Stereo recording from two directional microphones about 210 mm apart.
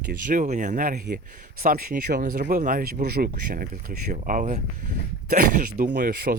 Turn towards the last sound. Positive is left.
turn(degrees=-45)  # may be behind; listen again after turning